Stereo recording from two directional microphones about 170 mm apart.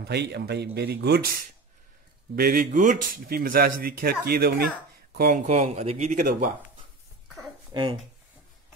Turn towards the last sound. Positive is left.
turn(degrees=-30)  # may be behind; listen again after turning